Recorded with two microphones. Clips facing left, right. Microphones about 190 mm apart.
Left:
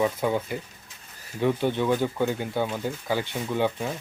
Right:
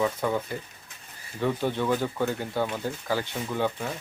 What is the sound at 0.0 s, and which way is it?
Speech, 10° left (ahead or behind).